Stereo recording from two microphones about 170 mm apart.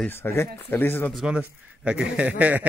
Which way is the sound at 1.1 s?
5° right (ahead or behind).